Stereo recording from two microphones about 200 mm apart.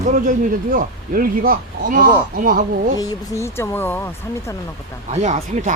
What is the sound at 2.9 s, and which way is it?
Speech, 15° left (ahead or behind).